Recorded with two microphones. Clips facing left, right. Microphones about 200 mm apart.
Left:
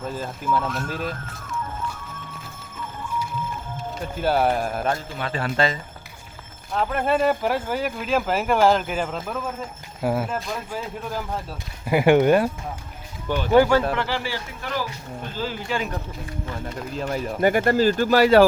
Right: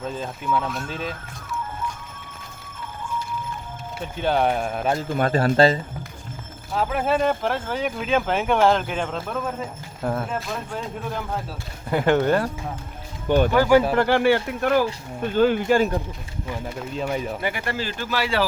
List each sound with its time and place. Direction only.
0.0 s speech: 5° left (ahead or behind)
4.2 s speech: 5° left (ahead or behind)
5.0 s speech: 50° right (ahead or behind); by 5.8 s 35° right (ahead or behind)
6.7 s speech: centre (ahead or behind); by 12.5 s 15° left (ahead or behind)
13.3 s speech: 15° right (ahead or behind)
13.9 s speech: 50° right (ahead or behind)
16.9 s speech: centre (ahead or behind)
17.4 s speech: 45° left (ahead or behind)